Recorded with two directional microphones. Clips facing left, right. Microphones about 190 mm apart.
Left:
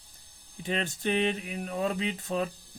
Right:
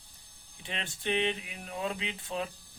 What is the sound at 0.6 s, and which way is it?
Speech, 40° left (ahead or behind).